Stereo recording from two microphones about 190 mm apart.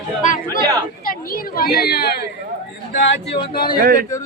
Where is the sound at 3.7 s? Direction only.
50° right (ahead or behind).